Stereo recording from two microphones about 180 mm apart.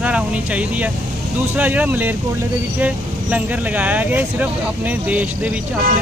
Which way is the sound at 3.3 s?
10° right (ahead or behind).